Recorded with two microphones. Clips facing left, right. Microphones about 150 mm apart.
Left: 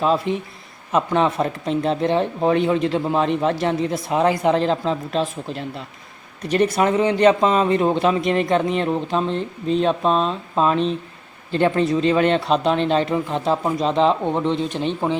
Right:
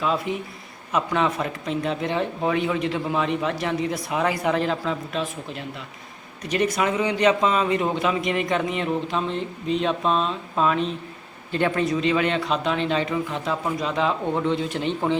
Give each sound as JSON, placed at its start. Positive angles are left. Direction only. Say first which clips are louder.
{"t": 0.0, "sound": "speech", "louder": "left 5 dB", "side_deg": 30}